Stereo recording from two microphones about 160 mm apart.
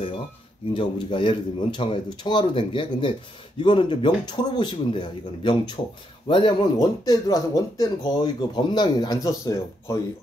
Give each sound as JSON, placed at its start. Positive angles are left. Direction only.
{"t": 0.7, "sound": "speech", "side_deg": 30}